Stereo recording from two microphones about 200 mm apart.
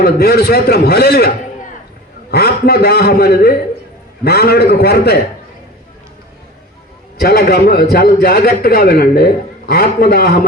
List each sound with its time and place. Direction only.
0.0 s a man's voice: 50° left (ahead or behind)
2.3 s a man's voice: 50° left (ahead or behind)
7.2 s a man's voice: 50° left (ahead or behind)